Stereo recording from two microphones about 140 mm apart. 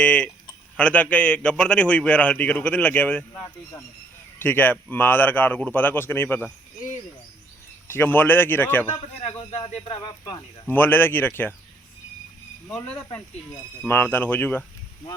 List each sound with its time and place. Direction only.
0.0 s a man's voice: 10° left (ahead or behind)
4.4 s a man's voice: 15° left (ahead or behind)
7.9 s a man's voice: 15° left (ahead or behind)
9.2 s speech: 45° left (ahead or behind)
10.7 s a man's voice: 15° left (ahead or behind)
12.6 s a man's voice: 10° left (ahead or behind)